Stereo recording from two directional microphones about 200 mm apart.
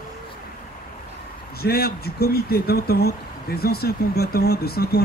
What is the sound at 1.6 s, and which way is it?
Speech, 50° left (ahead or behind).